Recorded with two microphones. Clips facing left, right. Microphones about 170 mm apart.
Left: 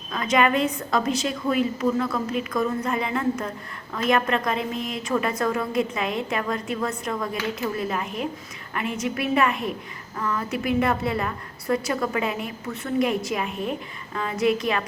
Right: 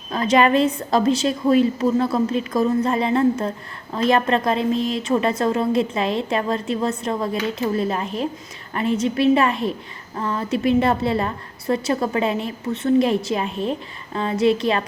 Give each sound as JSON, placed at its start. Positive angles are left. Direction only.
{"t": 0.1, "sound": "a woman's voice", "side_deg": -30}